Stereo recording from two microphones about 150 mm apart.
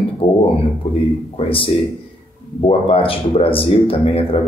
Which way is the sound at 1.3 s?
40° left (ahead or behind).